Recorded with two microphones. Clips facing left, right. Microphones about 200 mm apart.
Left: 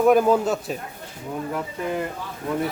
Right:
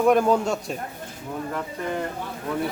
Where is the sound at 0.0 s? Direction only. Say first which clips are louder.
Left 2 dB; 5° left (ahead or behind).